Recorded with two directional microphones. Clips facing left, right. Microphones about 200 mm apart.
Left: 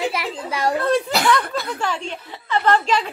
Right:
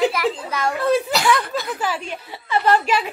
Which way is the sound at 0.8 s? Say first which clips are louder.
Right 4 dB; centre (ahead or behind).